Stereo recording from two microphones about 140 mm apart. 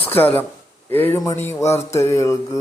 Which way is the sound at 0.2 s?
15° left (ahead or behind).